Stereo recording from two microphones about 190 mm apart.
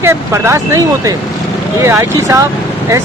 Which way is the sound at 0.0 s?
15° right (ahead or behind).